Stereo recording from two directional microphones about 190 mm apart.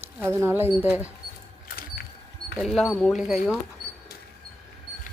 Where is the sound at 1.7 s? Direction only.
50° left (ahead or behind).